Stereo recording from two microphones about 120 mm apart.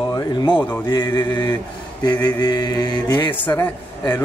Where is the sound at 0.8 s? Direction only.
35° left (ahead or behind).